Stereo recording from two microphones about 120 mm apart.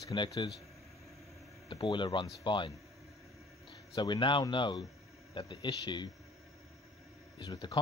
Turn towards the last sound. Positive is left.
turn(degrees=35)  # may be behind; listen again after turning